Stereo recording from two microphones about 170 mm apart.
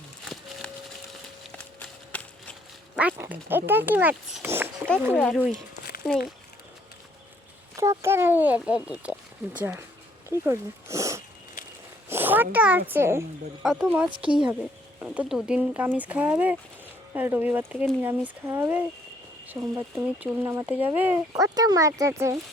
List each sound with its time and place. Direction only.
1.5 s a sound: 5° left (ahead or behind)
2.9 s speech: 10° right (ahead or behind)
4.4 s a sound: 10° right (ahead or behind)
5.1 s speech: 10° left (ahead or behind)
7.8 s speech: 15° right (ahead or behind)
12.0 s a sound: 10° right (ahead or behind)
12.9 s speech: 15° right (ahead or behind)
13.6 s speech: 5° right (ahead or behind)
14.1 s speech: 30° right (ahead or behind)
15.0 s speech: 10° right (ahead or behind)